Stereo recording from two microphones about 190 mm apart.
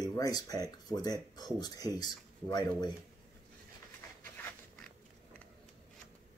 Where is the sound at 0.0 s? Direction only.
20° left (ahead or behind).